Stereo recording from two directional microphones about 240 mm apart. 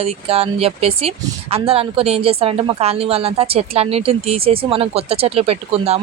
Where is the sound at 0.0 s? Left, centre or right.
Right.